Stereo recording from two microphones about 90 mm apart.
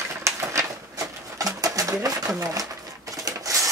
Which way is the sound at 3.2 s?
40° right (ahead or behind).